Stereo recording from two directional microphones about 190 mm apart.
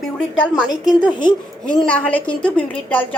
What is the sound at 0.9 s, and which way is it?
Speech, 25° left (ahead or behind).